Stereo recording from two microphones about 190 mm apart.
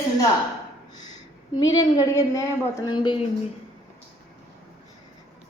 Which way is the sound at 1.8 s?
15° left (ahead or behind).